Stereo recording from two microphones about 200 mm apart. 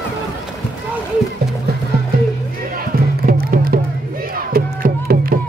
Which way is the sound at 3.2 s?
50° right (ahead or behind).